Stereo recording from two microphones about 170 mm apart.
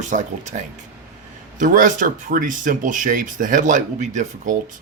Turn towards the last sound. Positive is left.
turn(degrees=-45)  # may be behind; listen again after turning